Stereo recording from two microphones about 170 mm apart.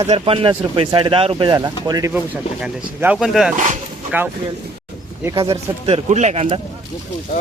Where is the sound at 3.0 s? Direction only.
5° right (ahead or behind).